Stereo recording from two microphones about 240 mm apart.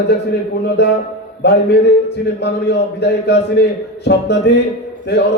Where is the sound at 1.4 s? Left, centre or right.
Left.